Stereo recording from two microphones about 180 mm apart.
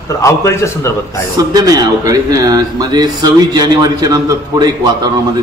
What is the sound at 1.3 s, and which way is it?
Speech, 20° right (ahead or behind).